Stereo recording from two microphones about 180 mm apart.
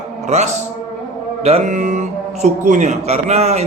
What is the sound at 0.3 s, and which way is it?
A man's voice, 40° right (ahead or behind).